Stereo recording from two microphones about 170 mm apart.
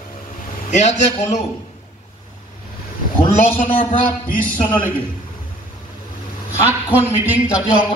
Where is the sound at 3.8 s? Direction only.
55° left (ahead or behind).